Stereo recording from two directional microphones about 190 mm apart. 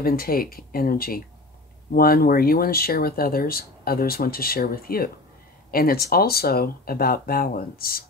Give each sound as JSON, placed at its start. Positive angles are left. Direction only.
{"t": 0.0, "sound": "speech", "side_deg": 50}